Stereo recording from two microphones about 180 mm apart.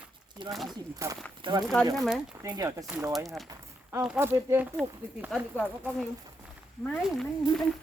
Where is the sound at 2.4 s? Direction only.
15° right (ahead or behind).